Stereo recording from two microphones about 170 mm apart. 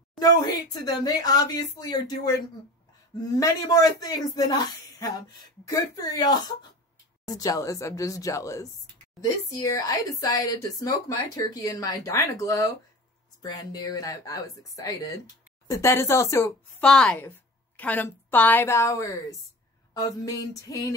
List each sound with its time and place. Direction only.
0.2 s a woman's voice: 25° left (ahead or behind)
16.8 s a woman's voice: 5° left (ahead or behind)